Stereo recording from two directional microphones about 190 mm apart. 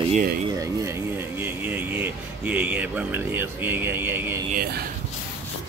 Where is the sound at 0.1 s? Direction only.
50° right (ahead or behind).